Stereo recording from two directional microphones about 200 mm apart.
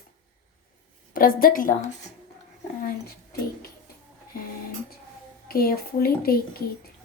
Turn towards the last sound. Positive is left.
turn(degrees=50)  # may be behind; listen again after turning